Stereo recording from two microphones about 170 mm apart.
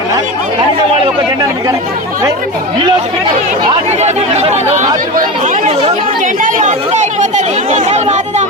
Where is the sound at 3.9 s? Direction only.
40° right (ahead or behind).